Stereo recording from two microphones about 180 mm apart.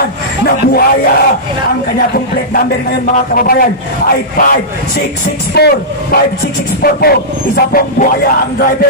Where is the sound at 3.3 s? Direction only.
55° left (ahead or behind).